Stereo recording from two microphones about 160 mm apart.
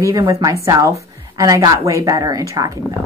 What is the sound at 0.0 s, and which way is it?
A woman's voice, 20° right (ahead or behind).